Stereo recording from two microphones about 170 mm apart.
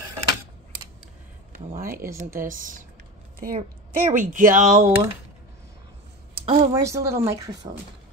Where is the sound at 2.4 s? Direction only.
50° right (ahead or behind).